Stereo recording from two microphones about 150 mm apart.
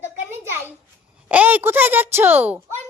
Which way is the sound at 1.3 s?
10° right (ahead or behind).